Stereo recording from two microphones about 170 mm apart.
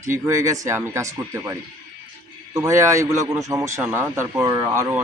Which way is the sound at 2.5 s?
15° right (ahead or behind).